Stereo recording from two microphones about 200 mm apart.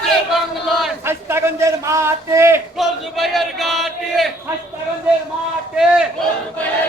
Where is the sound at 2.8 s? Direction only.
Centre (ahead or behind).